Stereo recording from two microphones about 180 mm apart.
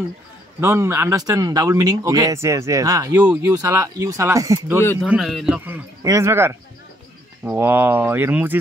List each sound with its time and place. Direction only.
0.6 s speech: 15° right (ahead or behind)
5.0 s a man's voice: 5° right (ahead or behind)
6.0 s speech: 15° right (ahead or behind)